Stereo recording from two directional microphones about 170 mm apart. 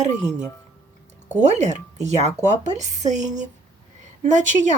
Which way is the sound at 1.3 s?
45° right (ahead or behind).